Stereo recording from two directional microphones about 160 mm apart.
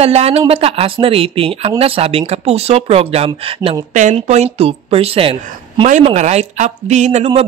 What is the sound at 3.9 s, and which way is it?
Speech, 50° right (ahead or behind).